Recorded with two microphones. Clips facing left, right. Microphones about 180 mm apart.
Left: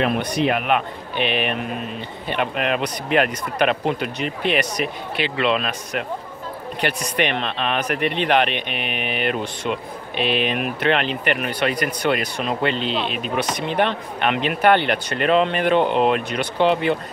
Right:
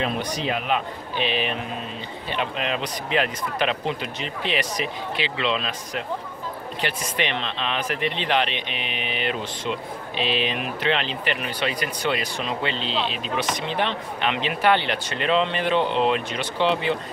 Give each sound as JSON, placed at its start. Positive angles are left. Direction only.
{"t": 0.0, "sound": "speech", "side_deg": 60}